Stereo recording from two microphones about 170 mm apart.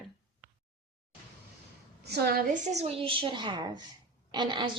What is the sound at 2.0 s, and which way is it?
A woman's voice, 70° right (ahead or behind).